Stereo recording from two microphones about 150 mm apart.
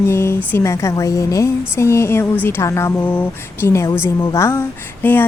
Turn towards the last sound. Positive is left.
turn(degrees=15)  # may be behind; listen again after turning